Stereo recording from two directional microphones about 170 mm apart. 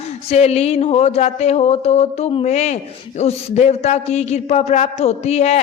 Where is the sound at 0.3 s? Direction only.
40° left (ahead or behind).